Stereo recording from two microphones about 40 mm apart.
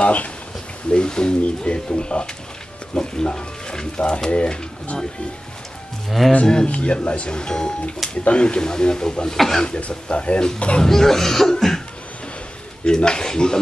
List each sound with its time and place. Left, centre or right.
0.0 s speech: left
0.9 s speech: left
6.0 s speech: centre
6.4 s speech: left
9.8 s speech: left
10.8 s speech: centre
12.8 s speech: left